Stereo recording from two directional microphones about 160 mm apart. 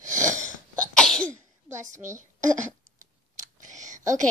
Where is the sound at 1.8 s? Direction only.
50° right (ahead or behind).